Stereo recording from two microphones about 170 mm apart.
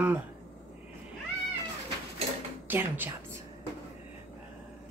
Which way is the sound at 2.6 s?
10° right (ahead or behind).